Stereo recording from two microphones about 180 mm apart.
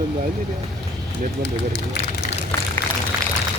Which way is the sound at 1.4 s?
70° left (ahead or behind).